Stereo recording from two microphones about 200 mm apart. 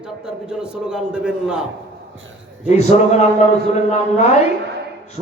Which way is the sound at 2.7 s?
35° left (ahead or behind).